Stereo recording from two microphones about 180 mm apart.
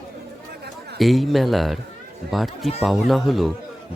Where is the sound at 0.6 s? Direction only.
65° right (ahead or behind).